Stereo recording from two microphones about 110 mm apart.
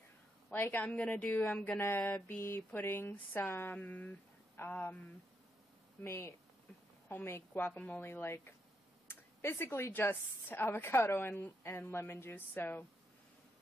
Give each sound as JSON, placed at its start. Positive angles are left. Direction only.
{"t": 0.5, "sound": "a woman's voice", "side_deg": 20}
{"t": 6.0, "sound": "a woman's voice", "side_deg": 25}